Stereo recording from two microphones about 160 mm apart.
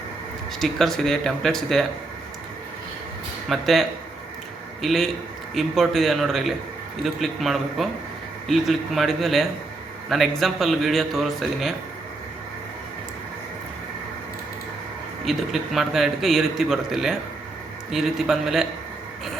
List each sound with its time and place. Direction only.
0.6 s a man's voice: centre (ahead or behind)
3.5 s a man's voice: centre (ahead or behind)
15.2 s a man's voice: centre (ahead or behind)